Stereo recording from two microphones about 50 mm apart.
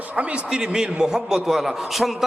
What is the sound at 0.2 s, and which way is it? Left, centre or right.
Speech, right.